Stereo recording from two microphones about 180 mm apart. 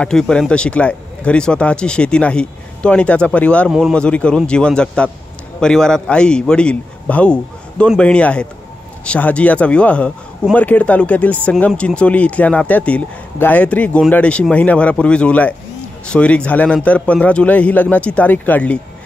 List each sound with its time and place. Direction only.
0.0 s a man's voice: 5° left (ahead or behind)